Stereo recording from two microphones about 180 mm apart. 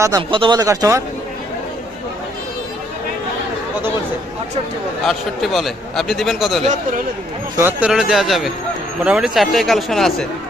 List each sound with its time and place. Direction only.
0.0 s speech: 25° right (ahead or behind)
5.0 s a man's voice: centre (ahead or behind)
7.5 s a man's voice: 10° right (ahead or behind)